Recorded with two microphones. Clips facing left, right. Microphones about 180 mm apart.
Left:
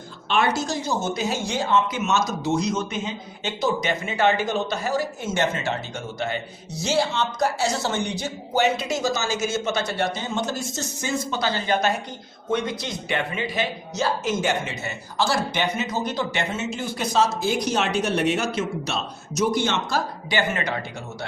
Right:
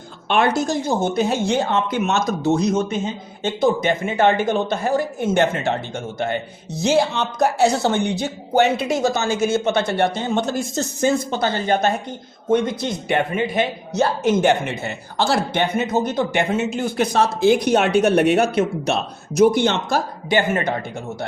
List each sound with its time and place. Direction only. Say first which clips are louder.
0.3 s speech: right 4 dB; 55° right (ahead or behind)